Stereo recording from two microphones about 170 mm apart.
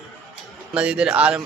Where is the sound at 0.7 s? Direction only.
5° right (ahead or behind).